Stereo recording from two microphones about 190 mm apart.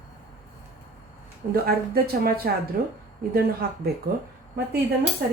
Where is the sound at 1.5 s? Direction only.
50° right (ahead or behind).